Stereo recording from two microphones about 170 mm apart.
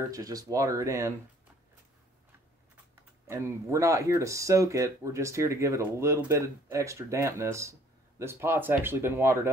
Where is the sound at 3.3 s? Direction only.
15° right (ahead or behind).